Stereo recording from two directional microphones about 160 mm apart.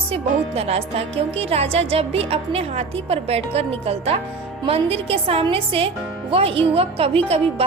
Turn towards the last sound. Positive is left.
turn(degrees=-35)  # may be behind; listen again after turning